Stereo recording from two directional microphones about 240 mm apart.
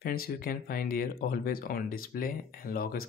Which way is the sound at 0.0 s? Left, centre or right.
Left.